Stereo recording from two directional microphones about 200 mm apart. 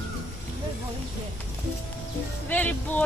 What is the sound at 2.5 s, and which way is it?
Speech, 10° left (ahead or behind).